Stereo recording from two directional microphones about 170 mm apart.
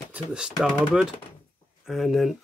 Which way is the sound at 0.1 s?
5° right (ahead or behind).